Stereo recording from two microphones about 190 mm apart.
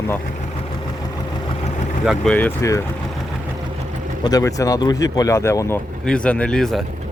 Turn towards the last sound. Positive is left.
turn(degrees=5)  # may be behind; listen again after turning